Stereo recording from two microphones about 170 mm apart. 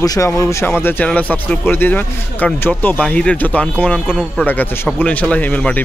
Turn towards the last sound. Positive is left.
turn(degrees=10)  # may be behind; listen again after turning